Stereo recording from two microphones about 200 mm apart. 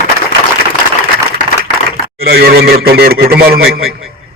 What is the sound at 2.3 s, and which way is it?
A man's voice, 50° right (ahead or behind).